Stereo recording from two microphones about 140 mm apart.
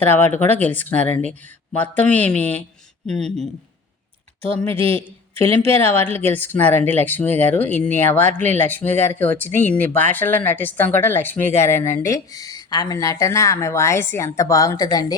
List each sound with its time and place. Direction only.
0.1 s speech: 15° left (ahead or behind)
5.3 s speech: 40° right (ahead or behind)
5.8 s speech: 15° left (ahead or behind)